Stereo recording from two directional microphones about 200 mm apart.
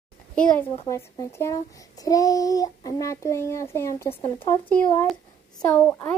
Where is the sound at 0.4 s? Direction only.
5° left (ahead or behind).